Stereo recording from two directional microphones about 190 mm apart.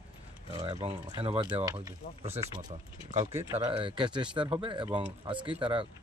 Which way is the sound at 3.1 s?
35° right (ahead or behind).